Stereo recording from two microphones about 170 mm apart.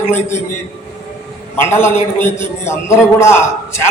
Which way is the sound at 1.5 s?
15° left (ahead or behind).